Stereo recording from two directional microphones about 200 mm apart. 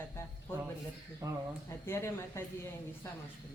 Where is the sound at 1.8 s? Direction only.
10° left (ahead or behind).